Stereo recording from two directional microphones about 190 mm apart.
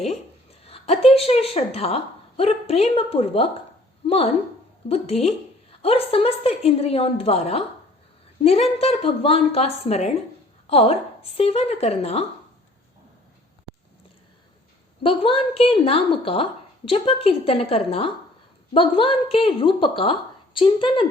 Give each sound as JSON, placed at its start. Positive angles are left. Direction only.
{"t": 0.6, "sound": "a woman's voice", "side_deg": 30}
{"t": 15.0, "sound": "a woman's voice", "side_deg": 30}